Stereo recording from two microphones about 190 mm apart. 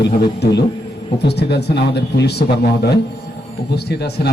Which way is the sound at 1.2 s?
60° left (ahead or behind).